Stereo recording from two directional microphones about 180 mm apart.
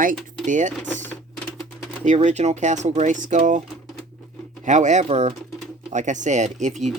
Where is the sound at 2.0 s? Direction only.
40° right (ahead or behind).